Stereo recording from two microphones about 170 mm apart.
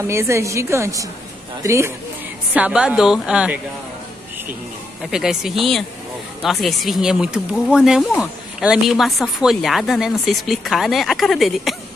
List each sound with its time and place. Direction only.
0.0 s a woman's voice: 15° right (ahead or behind)
2.5 s a woman's voice: 5° right (ahead or behind)
5.1 s speech: 5° right (ahead or behind)